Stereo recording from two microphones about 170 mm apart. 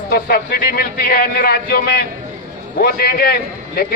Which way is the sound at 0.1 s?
65° left (ahead or behind).